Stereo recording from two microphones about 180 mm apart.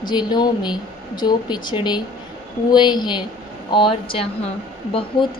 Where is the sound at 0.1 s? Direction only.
25° left (ahead or behind).